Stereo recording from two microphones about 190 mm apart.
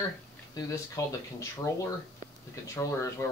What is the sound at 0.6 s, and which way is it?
Speech, 15° left (ahead or behind).